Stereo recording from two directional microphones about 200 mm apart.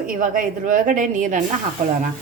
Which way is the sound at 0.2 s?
40° right (ahead or behind).